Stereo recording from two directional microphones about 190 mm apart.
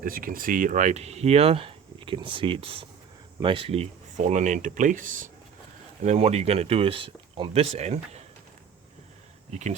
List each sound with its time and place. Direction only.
0.0 s speech: 50° right (ahead or behind)